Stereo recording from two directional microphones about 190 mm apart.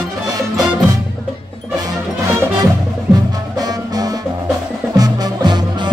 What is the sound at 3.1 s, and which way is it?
Music, 20° right (ahead or behind).